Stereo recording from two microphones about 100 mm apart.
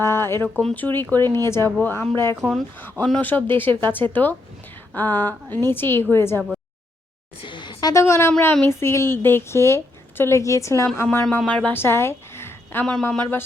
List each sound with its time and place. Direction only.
0.0 s a sound: 25° left (ahead or behind)
0.6 s a woman's voice: 15° left (ahead or behind)
2.4 s speech: centre (ahead or behind)
3.0 s a woman's voice: 15° left (ahead or behind)
7.4 s a sound: 55° left (ahead or behind)
8.0 s a woman's voice: 30° left (ahead or behind)
12.8 s speech: 10° left (ahead or behind)